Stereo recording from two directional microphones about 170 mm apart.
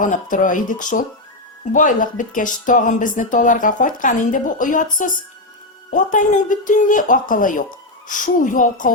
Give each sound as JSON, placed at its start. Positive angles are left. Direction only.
{"t": 0.0, "sound": "speech", "side_deg": 50}